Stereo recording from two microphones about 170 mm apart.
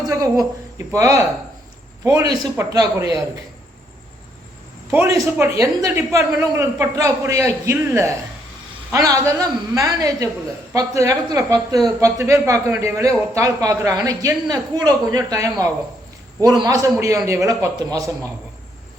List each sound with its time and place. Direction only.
0.1 s a man's voice: 20° right (ahead or behind)
4.9 s a woman's voice: 15° right (ahead or behind)